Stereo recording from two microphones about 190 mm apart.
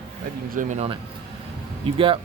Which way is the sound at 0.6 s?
35° right (ahead or behind).